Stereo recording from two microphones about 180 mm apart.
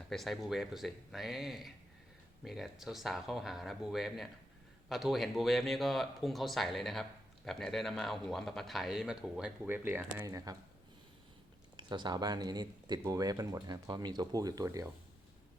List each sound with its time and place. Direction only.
0.1 s speech: centre (ahead or behind); by 10.5 s 20° right (ahead or behind)
11.8 s speech: 25° right (ahead or behind)